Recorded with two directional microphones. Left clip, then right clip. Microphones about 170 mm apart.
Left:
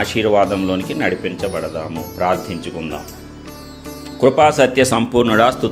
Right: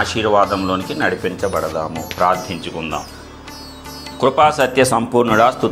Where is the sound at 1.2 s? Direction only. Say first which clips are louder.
Right 2 dB; 15° left (ahead or behind).